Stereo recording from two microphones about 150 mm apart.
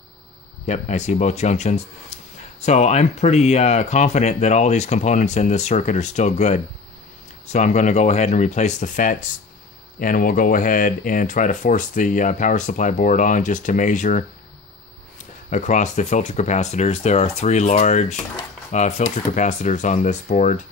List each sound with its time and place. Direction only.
0.7 s speech: 50° left (ahead or behind)
15.5 s speech: 55° left (ahead or behind)